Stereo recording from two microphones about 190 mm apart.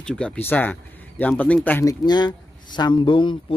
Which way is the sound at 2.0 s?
20° left (ahead or behind).